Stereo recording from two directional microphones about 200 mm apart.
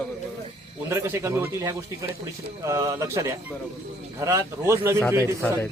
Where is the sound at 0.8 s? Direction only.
15° right (ahead or behind).